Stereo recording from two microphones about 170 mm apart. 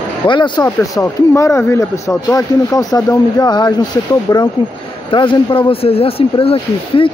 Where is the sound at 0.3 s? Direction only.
25° left (ahead or behind).